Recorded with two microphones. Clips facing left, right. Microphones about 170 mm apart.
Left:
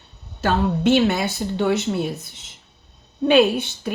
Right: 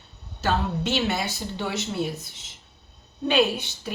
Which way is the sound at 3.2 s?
55° left (ahead or behind).